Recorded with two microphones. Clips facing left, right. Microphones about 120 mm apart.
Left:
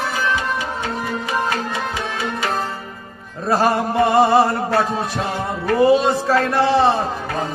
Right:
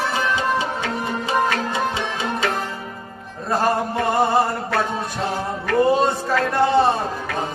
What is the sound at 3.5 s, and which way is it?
Music, 90° left.